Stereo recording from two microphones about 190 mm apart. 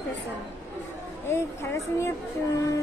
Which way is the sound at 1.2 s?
15° left (ahead or behind).